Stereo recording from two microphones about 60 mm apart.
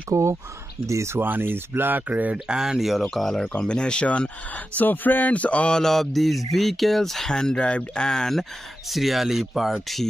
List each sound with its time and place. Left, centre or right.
0.1 s speech: right
1.1 s speech: right
2.3 s speech: centre
3.5 s speech: centre
4.7 s speech: left
5.8 s speech: centre